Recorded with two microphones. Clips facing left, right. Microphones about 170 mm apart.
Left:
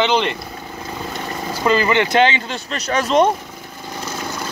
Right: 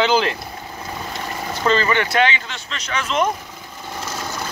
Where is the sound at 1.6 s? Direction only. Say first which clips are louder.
Left 2 dB; 15° left (ahead or behind); by 3.3 s 35° left (ahead or behind).